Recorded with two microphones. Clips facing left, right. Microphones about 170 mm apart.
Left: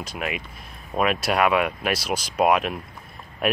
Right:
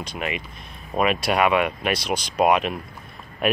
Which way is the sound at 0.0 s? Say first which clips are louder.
Right 1 dB; centre (ahead or behind).